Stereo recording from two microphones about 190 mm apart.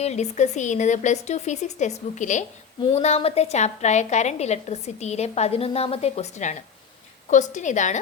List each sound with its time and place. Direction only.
0.0 s a woman's voice: 35° left (ahead or behind)